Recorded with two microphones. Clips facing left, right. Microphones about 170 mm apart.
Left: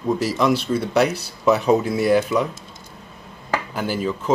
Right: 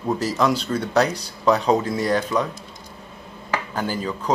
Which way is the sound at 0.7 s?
5° left (ahead or behind).